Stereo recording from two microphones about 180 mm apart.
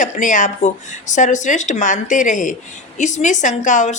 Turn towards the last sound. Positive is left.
turn(degrees=40)  # may be behind; listen again after turning